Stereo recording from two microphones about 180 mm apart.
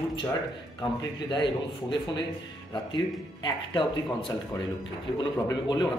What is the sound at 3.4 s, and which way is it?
Speech, 25° left (ahead or behind).